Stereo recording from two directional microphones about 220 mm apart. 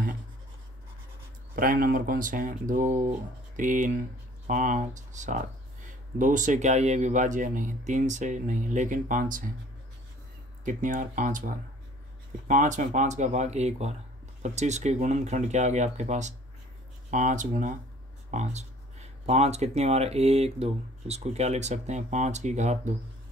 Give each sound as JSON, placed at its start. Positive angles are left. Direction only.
{"t": 1.5, "sound": "speech", "side_deg": -40}
{"t": 10.6, "sound": "speech", "side_deg": -35}